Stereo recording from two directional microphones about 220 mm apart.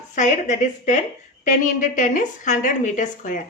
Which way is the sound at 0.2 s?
35° left (ahead or behind).